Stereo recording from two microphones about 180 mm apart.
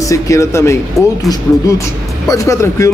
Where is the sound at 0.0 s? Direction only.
15° left (ahead or behind).